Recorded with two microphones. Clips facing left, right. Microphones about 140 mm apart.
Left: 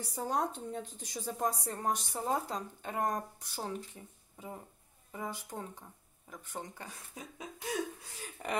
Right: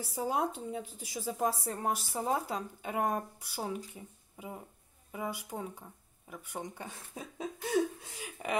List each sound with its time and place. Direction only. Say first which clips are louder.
0.0 s speech: right 2 dB; 5° right (ahead or behind)
6.9 s speech: right 3 dB; 30° right (ahead or behind)
8.4 s speech: right 2 dB; 5° right (ahead or behind)